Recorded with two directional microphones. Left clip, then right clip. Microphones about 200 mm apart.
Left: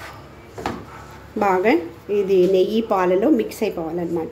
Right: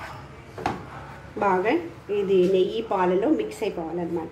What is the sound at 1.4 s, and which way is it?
A woman's voice, 40° left (ahead or behind).